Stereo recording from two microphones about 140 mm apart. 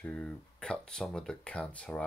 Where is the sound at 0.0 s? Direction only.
5° left (ahead or behind).